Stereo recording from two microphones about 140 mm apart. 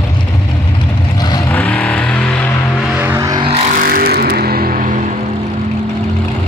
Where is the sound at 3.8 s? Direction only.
90° right; by 5.0 s 75° right (ahead or behind).